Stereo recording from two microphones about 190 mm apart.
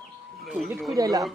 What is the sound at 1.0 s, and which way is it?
Speech, 20° right (ahead or behind).